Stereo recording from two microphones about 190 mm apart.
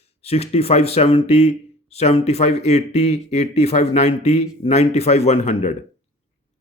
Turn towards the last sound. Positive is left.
turn(degrees=35)  # may be behind; listen again after turning